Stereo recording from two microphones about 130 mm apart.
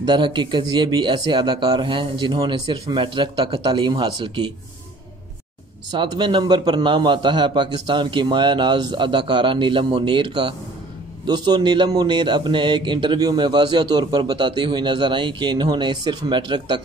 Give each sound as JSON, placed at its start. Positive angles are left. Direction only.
{"t": 0.0, "sound": "a man's voice", "side_deg": -35}
{"t": 5.9, "sound": "a man's voice", "side_deg": -35}